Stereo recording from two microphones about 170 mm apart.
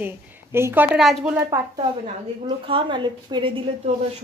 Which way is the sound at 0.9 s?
Centre (ahead or behind).